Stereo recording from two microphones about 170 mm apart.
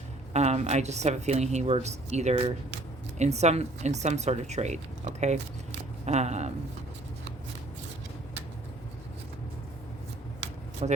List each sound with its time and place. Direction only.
0.3 s a woman's voice: 40° right (ahead or behind)
10.8 s a woman's voice: 40° right (ahead or behind)